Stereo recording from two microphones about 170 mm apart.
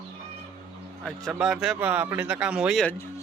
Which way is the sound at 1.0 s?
Centre (ahead or behind).